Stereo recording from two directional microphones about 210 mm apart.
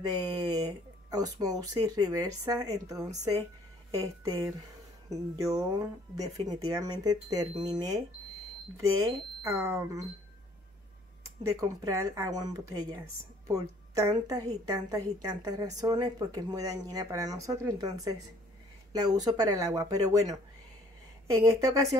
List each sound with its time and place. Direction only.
0.2 s a woman's voice: 20° right (ahead or behind)
11.4 s a woman's voice: 15° right (ahead or behind)